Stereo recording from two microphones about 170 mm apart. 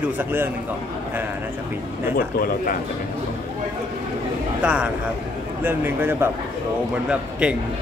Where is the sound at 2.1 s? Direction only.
60° left (ahead or behind).